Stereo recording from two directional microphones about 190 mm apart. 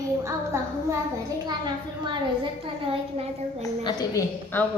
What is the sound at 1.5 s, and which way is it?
A woman's voice, 25° right (ahead or behind).